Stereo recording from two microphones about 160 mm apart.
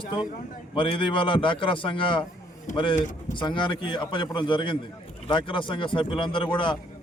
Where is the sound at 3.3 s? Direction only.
30° left (ahead or behind).